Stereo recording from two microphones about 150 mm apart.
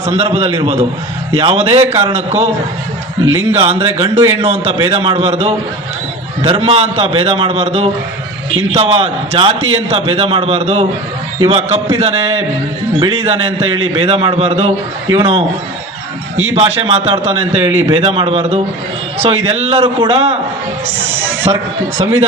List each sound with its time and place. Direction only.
0.0 s a man's voice: 45° right (ahead or behind)
3.5 s a man's voice: 45° right (ahead or behind)
13.0 s a man's voice: 35° right (ahead or behind)
16.6 s a man's voice: 40° right (ahead or behind)
21.5 s a man's voice: 35° right (ahead or behind)
21.9 s a man's voice: 45° right (ahead or behind)